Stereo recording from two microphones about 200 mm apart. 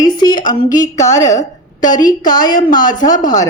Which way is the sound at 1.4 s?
40° left (ahead or behind).